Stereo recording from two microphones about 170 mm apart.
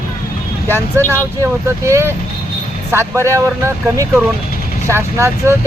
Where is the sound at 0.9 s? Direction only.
15° right (ahead or behind).